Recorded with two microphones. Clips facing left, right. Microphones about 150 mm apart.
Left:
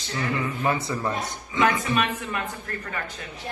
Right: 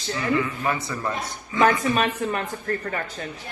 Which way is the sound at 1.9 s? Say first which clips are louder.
Right 2 dB; 35° right (ahead or behind).